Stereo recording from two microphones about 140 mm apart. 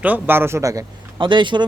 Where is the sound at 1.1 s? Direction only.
35° right (ahead or behind).